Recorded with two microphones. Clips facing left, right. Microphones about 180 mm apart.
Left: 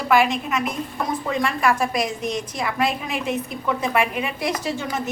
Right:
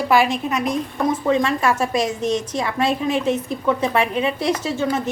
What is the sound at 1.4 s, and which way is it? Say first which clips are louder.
A woman's voice: right 1 dB; 25° right (ahead or behind).